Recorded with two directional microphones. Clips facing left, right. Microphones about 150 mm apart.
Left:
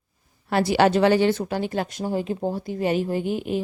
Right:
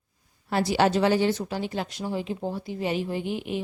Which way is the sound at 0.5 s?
60° left (ahead or behind).